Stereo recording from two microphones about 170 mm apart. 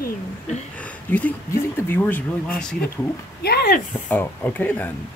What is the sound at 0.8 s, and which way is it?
Speech, 10° left (ahead or behind).